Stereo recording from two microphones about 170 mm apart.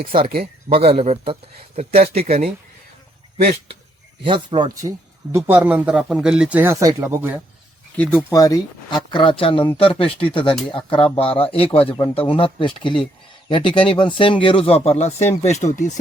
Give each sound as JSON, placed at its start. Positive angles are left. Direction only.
{"t": 0.0, "sound": "speech", "side_deg": -30}
{"t": 4.2, "sound": "speech", "side_deg": -30}
{"t": 7.9, "sound": "speech", "side_deg": 10}
{"t": 8.3, "sound": "speech", "side_deg": 20}